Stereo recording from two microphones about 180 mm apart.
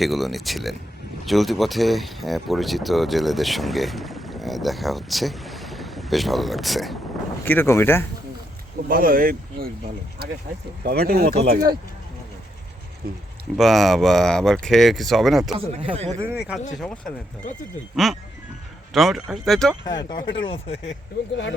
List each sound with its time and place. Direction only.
0.0 s speech: centre (ahead or behind)
7.4 s speech: 10° left (ahead or behind)
8.9 s speech: 55° right (ahead or behind)
10.8 s speech: 55° right (ahead or behind)
13.0 s speech: 60° right (ahead or behind)
13.6 s speech: centre (ahead or behind)
15.5 s speech: 30° right (ahead or behind)
16.1 s speech: 10° right (ahead or behind)
16.7 s speech: 5° left (ahead or behind)
19.8 s speech: 25° left (ahead or behind)